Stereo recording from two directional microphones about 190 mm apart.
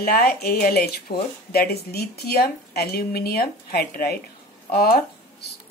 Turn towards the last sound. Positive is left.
turn(degrees=55)  # may be behind; listen again after turning